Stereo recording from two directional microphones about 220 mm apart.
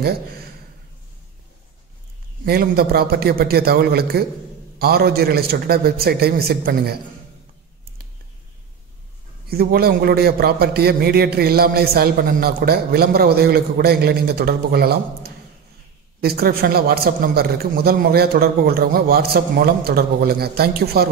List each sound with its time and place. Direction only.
0.0 s a man's voice: 45° right (ahead or behind)
2.4 s a man's voice: 45° right (ahead or behind)
9.5 s a man's voice: 45° right (ahead or behind)